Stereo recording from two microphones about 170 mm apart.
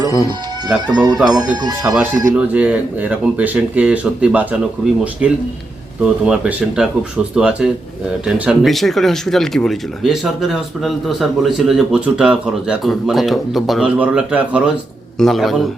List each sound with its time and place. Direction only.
0.0 s speech: 25° right (ahead or behind)
2.3 s speech: 10° right (ahead or behind)